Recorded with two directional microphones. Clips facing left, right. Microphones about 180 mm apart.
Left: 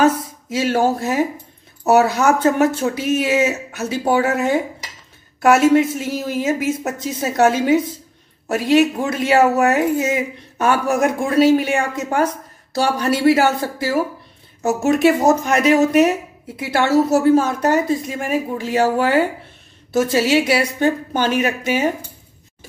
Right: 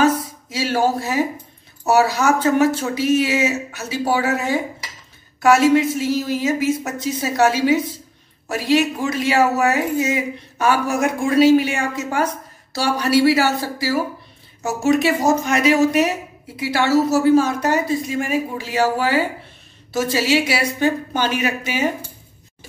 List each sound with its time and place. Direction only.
0.0 s speech: 55° left (ahead or behind)